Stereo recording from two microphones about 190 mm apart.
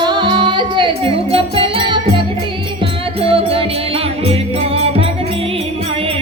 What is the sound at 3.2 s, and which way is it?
Music, 30° right (ahead or behind).